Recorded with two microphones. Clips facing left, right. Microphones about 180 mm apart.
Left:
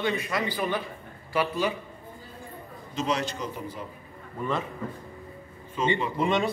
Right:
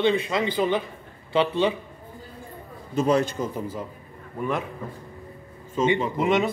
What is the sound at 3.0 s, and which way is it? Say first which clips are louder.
Speech: right 7 dB; 55° right (ahead or behind).